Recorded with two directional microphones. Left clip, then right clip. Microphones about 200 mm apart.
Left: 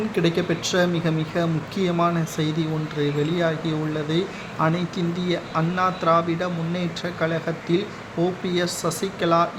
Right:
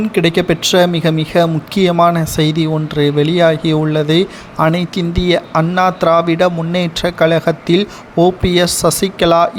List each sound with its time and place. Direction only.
0.1 s speech: 40° right (ahead or behind)